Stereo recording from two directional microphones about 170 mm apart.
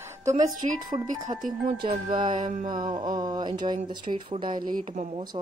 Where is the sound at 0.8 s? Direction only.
25° right (ahead or behind).